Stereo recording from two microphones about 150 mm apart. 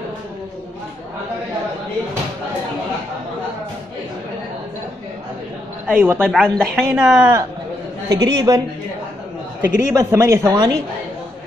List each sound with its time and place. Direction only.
5.9 s a woman's voice: 15° right (ahead or behind)
8.1 s a man's voice: 25° right (ahead or behind)
9.6 s a man's voice: 20° right (ahead or behind)
10.5 s a man's voice: 30° right (ahead or behind)